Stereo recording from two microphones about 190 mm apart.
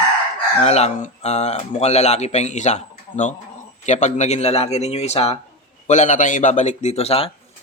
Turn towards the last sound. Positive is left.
turn(degrees=30)  # may be behind; listen again after turning